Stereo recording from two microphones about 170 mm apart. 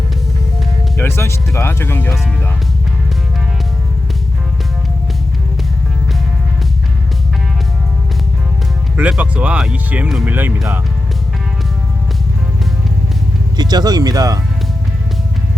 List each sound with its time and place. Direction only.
0.9 s music: 15° left (ahead or behind)
1.5 s speech: 15° left (ahead or behind)
9.0 s speech: 5° right (ahead or behind)
13.6 s speech: 25° right (ahead or behind)